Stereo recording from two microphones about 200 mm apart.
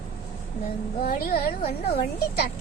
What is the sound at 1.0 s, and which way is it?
A child's voice, 45° left (ahead or behind).